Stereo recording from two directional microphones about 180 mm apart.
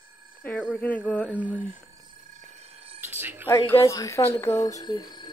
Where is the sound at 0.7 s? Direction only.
10° left (ahead or behind).